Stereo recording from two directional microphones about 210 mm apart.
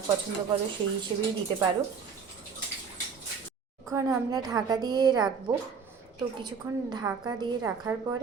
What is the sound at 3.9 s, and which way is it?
A woman's voice, 15° right (ahead or behind).